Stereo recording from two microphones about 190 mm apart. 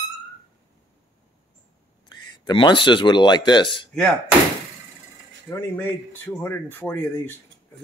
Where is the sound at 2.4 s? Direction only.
25° left (ahead or behind).